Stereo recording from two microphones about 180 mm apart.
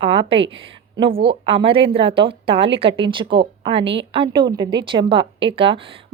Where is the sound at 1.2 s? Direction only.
30° right (ahead or behind).